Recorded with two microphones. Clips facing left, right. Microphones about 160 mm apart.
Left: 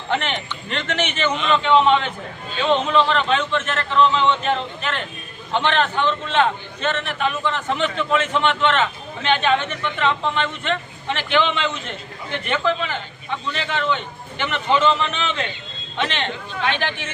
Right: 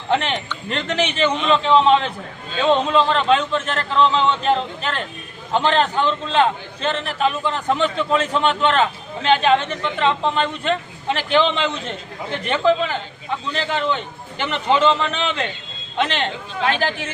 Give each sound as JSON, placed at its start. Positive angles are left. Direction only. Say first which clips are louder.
{"t": 0.1, "sound": "a man's voice", "louder": "right 3 dB", "side_deg": -35}